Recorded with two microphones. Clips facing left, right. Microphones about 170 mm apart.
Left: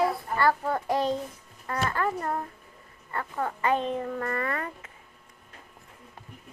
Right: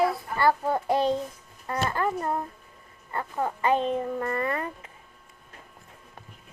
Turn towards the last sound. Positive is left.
turn(degrees=-25)  # may be behind; listen again after turning